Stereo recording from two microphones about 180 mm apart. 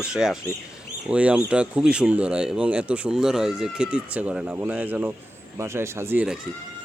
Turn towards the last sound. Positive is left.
turn(degrees=-5)  # may be behind; listen again after turning